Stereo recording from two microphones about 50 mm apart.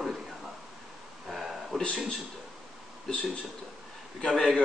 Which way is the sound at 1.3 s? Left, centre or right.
Centre.